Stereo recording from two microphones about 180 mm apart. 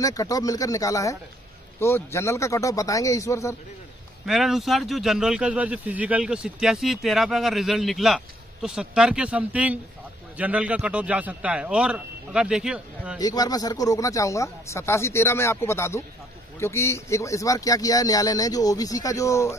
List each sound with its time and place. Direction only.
0.0 s speech: 20° left (ahead or behind)
4.3 s a man's voice: centre (ahead or behind)
13.2 s speech: 20° left (ahead or behind)